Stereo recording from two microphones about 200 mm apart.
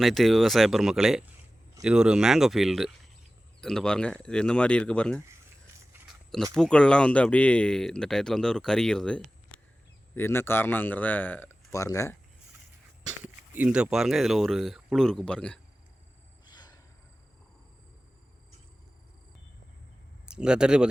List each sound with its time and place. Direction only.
0.0 s speech: centre (ahead or behind)
6.3 s a man's voice: centre (ahead or behind)
13.5 s speech: 5° right (ahead or behind)
16.5 s a sound: 20° left (ahead or behind)
20.3 s speech: 5° right (ahead or behind)